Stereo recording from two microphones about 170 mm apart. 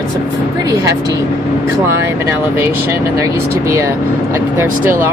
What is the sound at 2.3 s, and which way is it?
Speech, 15° right (ahead or behind).